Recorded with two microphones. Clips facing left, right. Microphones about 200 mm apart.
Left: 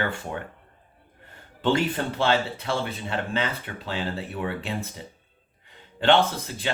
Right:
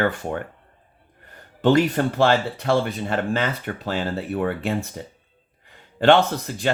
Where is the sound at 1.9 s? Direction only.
50° right (ahead or behind).